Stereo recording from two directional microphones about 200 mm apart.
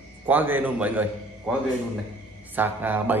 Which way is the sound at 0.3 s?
10° right (ahead or behind).